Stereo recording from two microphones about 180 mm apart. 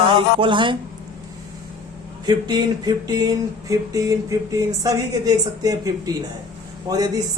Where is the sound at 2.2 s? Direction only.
20° right (ahead or behind).